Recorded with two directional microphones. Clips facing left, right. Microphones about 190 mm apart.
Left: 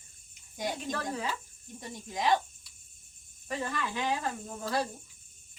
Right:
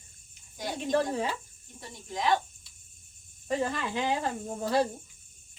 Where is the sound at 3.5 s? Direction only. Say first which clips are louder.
Right 5 dB; 25° right (ahead or behind).